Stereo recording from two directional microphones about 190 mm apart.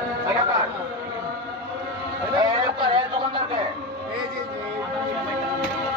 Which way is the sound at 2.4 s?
25° right (ahead or behind).